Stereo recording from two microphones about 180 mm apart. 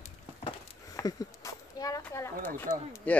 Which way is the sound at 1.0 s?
20° left (ahead or behind).